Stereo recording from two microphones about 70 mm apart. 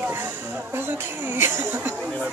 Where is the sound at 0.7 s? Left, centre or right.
Right.